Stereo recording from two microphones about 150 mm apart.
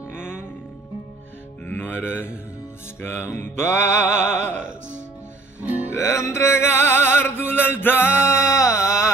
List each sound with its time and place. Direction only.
1.7 s music: 15° left (ahead or behind)
5.9 s music: 20° left (ahead or behind)